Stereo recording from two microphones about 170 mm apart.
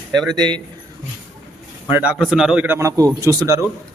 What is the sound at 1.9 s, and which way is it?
A man's voice, 10° right (ahead or behind).